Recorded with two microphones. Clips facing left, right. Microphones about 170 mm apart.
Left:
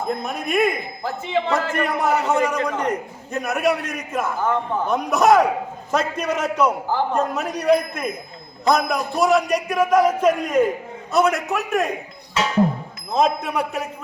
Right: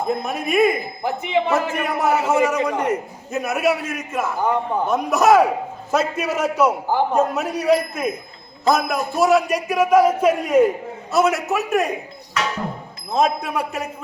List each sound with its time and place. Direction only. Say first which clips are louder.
0.1 s a man's voice: right 2 dB; centre (ahead or behind)
1.0 s a man's voice: right 2 dB; 15° right (ahead or behind)
1.7 s a man's voice: even; centre (ahead or behind)
4.4 s a man's voice: right 2 dB; 15° right (ahead or behind)
4.9 s a man's voice: right 1 dB; centre (ahead or behind)
13.1 s a man's voice: even; centre (ahead or behind)